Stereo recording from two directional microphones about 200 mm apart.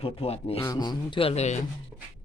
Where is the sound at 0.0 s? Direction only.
30° left (ahead or behind).